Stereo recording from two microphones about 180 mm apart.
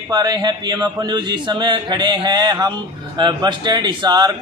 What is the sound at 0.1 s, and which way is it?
A man's voice, 20° right (ahead or behind).